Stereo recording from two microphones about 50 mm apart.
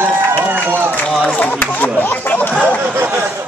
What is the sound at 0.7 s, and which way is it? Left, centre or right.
Speech, right.